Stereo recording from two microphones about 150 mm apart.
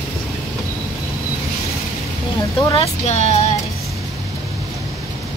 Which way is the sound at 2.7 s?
45° left (ahead or behind).